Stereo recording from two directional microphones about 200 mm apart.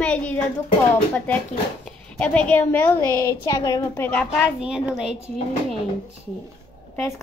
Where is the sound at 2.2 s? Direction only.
5° left (ahead or behind).